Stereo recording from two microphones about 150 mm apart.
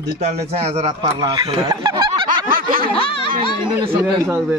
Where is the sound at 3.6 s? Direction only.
35° right (ahead or behind).